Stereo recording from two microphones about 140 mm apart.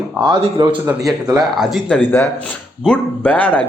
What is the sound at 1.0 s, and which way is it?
Speech, 25° right (ahead or behind).